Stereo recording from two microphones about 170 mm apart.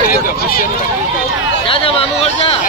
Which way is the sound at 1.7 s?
35° left (ahead or behind).